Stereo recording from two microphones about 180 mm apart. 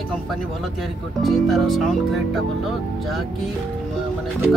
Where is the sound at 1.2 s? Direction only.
Centre (ahead or behind).